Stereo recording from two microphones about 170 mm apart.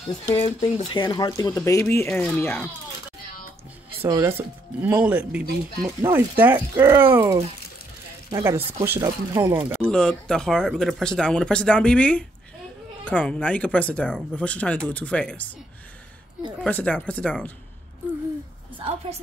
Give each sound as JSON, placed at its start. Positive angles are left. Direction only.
{"t": 0.6, "sound": "speech", "side_deg": 25}
{"t": 4.0, "sound": "speech", "side_deg": -15}
{"t": 9.8, "sound": "speech", "side_deg": 5}
{"t": 16.6, "sound": "speech", "side_deg": 10}
{"t": 18.8, "sound": "a woman's voice", "side_deg": -35}